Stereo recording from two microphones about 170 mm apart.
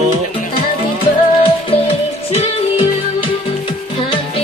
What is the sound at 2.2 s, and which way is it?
Music, 35° left (ahead or behind).